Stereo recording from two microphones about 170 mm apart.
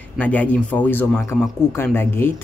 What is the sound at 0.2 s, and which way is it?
Speech, 10° left (ahead or behind).